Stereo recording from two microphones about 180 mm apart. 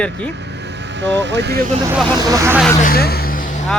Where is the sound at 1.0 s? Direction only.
80° right.